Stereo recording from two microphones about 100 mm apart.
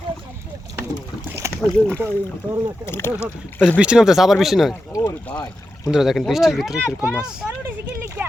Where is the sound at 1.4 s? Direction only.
30° right (ahead or behind).